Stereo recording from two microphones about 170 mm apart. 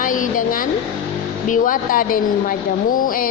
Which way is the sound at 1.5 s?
50° left (ahead or behind).